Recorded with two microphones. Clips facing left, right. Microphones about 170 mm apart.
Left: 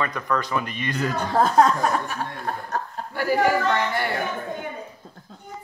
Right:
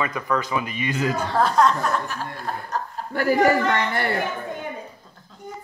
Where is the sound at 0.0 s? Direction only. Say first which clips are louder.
Right 1 dB; 10° right (ahead or behind).